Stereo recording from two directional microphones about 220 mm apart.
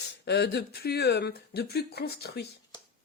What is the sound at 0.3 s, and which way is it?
Speech, 50° left (ahead or behind).